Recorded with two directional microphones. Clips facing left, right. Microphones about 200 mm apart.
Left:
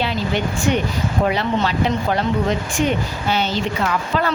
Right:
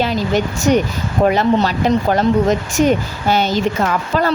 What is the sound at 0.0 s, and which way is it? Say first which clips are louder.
A woman's voice: right 4 dB; 40° right (ahead or behind).